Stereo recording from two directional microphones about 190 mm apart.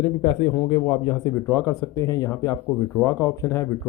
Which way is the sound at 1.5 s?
15° left (ahead or behind).